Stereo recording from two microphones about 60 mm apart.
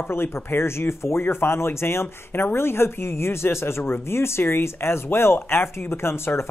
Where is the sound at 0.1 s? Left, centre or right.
Left.